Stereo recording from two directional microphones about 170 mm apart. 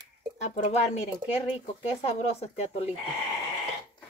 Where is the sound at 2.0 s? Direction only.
40° left (ahead or behind).